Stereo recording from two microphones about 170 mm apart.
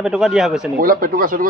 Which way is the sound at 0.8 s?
55° right (ahead or behind).